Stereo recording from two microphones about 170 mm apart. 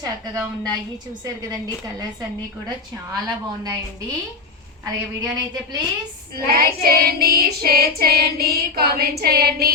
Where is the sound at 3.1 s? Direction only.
25° right (ahead or behind).